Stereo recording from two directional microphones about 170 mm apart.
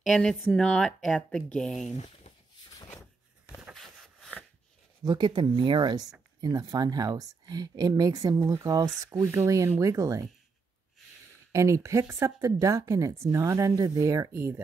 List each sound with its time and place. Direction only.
0.0 s speech: centre (ahead or behind)
3.4 s a sound: centre (ahead or behind)
5.0 s speech: 25° right (ahead or behind)
11.5 s speech: 15° right (ahead or behind)